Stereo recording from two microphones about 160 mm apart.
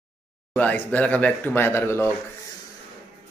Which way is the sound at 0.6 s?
10° left (ahead or behind).